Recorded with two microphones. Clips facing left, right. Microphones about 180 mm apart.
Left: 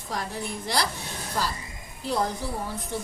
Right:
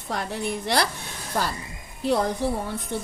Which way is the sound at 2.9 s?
60° right (ahead or behind).